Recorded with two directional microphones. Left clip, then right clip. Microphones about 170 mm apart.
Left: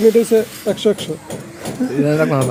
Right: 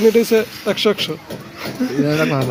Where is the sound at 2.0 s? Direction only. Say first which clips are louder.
Left 2 dB; 5° right (ahead or behind).